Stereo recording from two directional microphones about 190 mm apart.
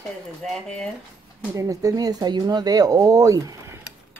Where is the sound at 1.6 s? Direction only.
20° right (ahead or behind).